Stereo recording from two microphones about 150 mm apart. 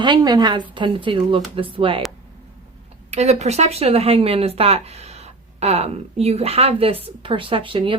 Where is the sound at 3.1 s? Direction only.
45° right (ahead or behind).